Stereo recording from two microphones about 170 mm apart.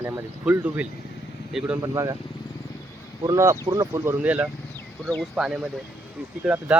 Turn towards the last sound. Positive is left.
turn(degrees=-10)  # may be behind; listen again after turning